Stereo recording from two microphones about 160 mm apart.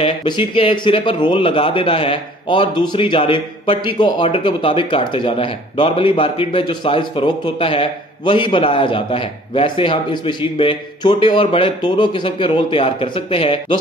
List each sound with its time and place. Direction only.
0.0 s speech: 30° left (ahead or behind)